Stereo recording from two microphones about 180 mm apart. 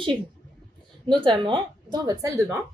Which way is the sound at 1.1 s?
25° right (ahead or behind).